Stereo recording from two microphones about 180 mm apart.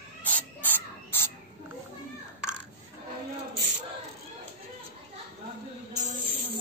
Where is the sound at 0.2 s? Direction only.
10° left (ahead or behind).